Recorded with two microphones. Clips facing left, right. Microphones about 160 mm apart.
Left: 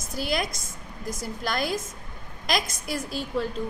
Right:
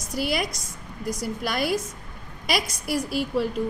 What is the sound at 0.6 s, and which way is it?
Speech, 50° left (ahead or behind).